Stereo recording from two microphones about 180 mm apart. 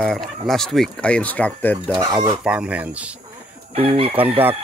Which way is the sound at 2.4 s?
5° right (ahead or behind).